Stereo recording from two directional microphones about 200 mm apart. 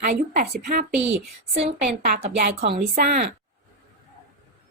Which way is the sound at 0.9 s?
5° right (ahead or behind).